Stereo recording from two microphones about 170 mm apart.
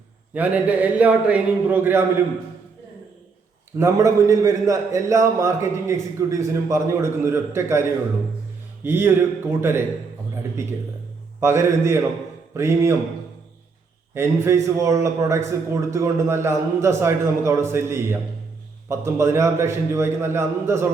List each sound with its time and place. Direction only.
0.3 s a man's voice: 10° right (ahead or behind)
3.8 s a man's voice: 15° right (ahead or behind)
11.3 s a man's voice: 15° right (ahead or behind)
14.1 s a man's voice: 15° right (ahead or behind)